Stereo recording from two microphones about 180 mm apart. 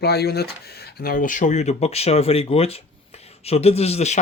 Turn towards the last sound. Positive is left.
turn(degrees=35)  # may be behind; listen again after turning